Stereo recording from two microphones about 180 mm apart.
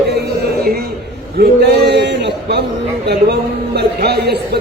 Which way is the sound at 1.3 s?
65° right (ahead or behind).